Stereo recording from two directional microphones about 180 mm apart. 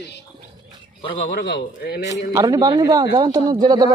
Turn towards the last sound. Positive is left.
turn(degrees=-25)  # may be behind; listen again after turning